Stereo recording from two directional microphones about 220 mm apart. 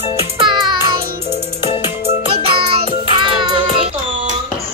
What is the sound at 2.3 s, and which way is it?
Music, 25° right (ahead or behind).